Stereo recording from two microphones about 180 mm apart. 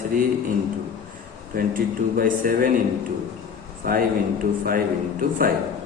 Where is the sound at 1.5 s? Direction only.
50° right (ahead or behind).